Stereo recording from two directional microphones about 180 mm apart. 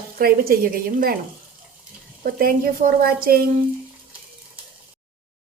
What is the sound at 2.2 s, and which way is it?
A woman's voice, 55° right (ahead or behind).